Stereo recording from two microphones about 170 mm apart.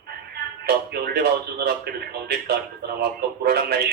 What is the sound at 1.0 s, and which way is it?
Speech, 70° right (ahead or behind).